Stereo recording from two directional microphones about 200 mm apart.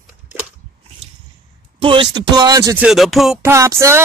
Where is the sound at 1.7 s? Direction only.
25° right (ahead or behind).